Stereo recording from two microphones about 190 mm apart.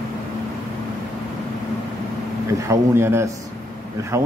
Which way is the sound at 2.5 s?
15° right (ahead or behind).